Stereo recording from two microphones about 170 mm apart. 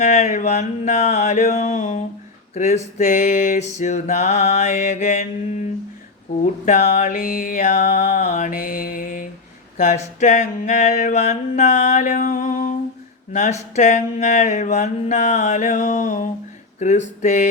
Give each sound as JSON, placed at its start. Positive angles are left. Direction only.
{"t": 0.0, "sound": "mantra", "side_deg": 40}
{"t": 6.7, "sound": "mantra", "side_deg": 45}